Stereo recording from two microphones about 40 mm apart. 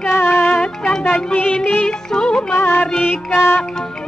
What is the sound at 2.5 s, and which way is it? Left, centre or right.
Music, left.